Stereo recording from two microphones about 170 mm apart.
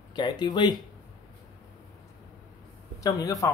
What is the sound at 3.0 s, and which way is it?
Speech, 20° left (ahead or behind).